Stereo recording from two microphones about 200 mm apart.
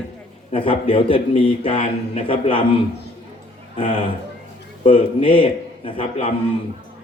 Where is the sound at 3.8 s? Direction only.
25° left (ahead or behind).